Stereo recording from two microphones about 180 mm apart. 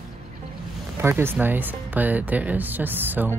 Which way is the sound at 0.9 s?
15° right (ahead or behind).